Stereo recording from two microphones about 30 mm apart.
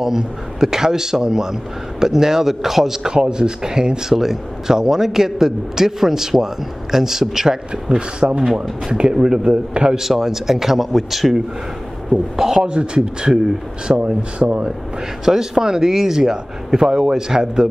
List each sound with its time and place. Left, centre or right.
0.0 s a man's voice: centre
3.1 s speech: right
4.2 s a man's voice: centre; by 9.4 s right
9.4 s a man's voice: right
9.9 s a man's voice: centre
12.4 s speech: centre
12.6 s speech: right
13.9 s speech: right
15.2 s speech: centre